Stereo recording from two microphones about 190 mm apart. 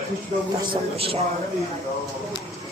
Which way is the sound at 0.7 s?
30° right (ahead or behind).